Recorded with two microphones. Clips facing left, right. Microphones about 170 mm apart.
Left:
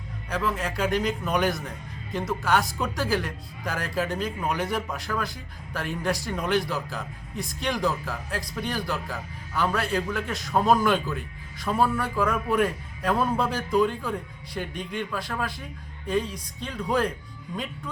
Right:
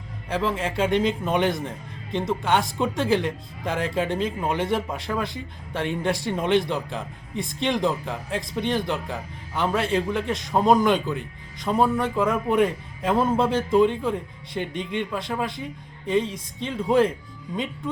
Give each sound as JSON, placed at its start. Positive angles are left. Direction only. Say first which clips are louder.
{"t": 0.3, "sound": "speech", "louder": "right 3 dB", "side_deg": -25}